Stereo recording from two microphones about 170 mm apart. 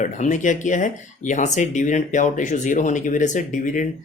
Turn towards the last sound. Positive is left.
turn(degrees=50)  # may be behind; listen again after turning